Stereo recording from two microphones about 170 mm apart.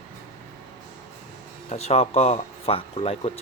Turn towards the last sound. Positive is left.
turn(degrees=35)  # may be behind; listen again after turning